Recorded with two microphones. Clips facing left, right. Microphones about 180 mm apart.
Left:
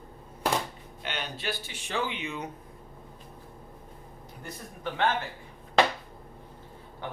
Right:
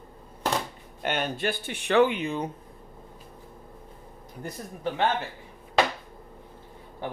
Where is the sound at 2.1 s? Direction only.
35° right (ahead or behind).